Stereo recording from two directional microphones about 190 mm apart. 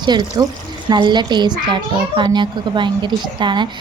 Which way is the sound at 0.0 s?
20° right (ahead or behind).